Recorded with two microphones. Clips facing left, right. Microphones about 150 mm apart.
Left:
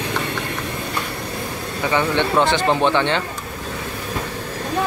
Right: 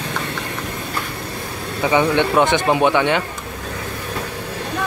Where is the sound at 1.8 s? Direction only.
15° right (ahead or behind).